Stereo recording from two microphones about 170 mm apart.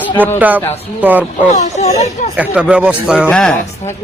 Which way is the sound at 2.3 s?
5° right (ahead or behind).